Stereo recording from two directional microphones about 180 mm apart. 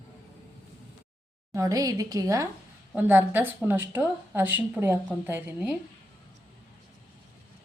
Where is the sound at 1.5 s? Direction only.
20° right (ahead or behind).